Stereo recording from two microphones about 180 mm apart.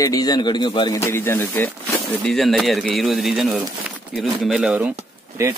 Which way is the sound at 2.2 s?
Centre (ahead or behind).